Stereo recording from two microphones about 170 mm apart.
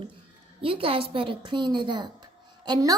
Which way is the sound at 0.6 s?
30° right (ahead or behind).